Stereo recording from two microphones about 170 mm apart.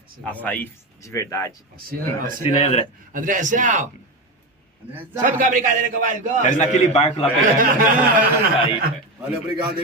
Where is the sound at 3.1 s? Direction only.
50° right (ahead or behind).